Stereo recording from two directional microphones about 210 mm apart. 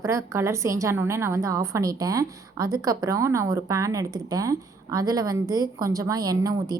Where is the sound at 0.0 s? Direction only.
15° right (ahead or behind).